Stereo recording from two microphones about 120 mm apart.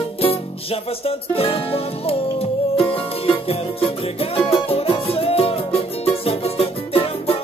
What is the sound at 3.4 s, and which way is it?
Music, 50° left (ahead or behind).